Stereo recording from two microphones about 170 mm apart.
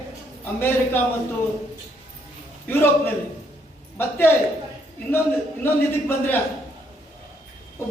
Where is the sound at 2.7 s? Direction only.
15° left (ahead or behind).